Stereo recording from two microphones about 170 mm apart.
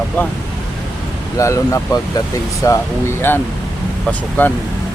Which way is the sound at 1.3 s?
20° left (ahead or behind).